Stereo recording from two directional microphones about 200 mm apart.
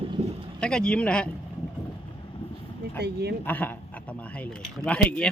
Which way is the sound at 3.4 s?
10° left (ahead or behind).